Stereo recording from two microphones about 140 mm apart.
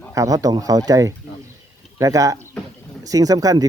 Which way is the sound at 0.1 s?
25° right (ahead or behind).